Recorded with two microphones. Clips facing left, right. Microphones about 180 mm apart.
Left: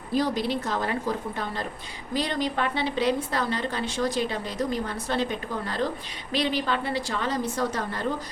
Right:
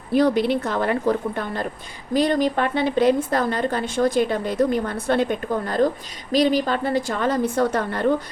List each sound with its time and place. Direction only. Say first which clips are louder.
0.1 s a woman's voice: right 7 dB; 60° right (ahead or behind)
2.1 s a woman's voice: right 8 dB; 45° right (ahead or behind)